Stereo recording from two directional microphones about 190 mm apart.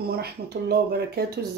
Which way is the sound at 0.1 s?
55° right (ahead or behind).